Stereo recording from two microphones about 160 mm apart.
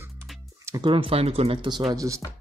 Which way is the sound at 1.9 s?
20° right (ahead or behind).